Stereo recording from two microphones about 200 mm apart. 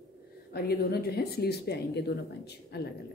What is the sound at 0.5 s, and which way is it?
Speech, 50° left (ahead or behind).